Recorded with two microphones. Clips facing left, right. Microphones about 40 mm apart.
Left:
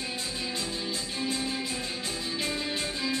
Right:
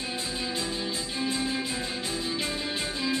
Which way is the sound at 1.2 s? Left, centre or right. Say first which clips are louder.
Right 3 dB; centre.